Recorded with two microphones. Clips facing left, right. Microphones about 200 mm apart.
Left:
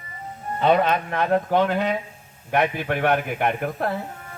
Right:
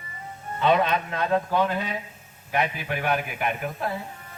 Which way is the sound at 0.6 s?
45° left (ahead or behind).